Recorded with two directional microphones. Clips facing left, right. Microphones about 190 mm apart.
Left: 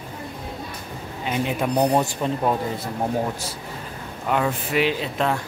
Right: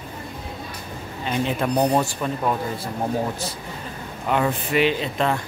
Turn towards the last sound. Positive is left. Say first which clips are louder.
# right 1 dB
turn(degrees=0)  # may be behind; listen again after turning